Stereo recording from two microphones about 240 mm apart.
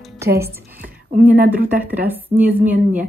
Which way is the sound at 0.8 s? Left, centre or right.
Right.